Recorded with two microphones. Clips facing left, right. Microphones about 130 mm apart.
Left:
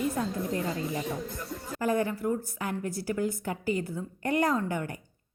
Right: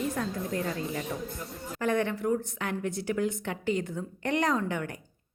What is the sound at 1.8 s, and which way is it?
A woman's voice, 5° left (ahead or behind).